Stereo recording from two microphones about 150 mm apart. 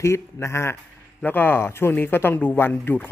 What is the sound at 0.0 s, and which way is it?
Speech, 20° left (ahead or behind).